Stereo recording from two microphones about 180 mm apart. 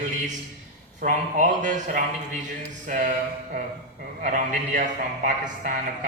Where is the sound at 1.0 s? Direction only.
45° right (ahead or behind).